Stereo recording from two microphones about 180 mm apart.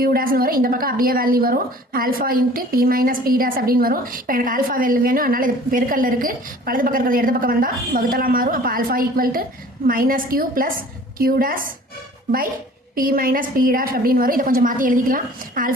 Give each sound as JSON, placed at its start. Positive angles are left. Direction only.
{"t": 0.0, "sound": "a woman's voice", "side_deg": -55}
{"t": 13.0, "sound": "a woman's voice", "side_deg": -50}